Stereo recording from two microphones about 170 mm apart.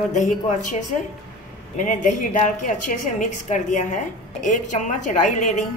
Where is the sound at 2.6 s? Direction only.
50° left (ahead or behind).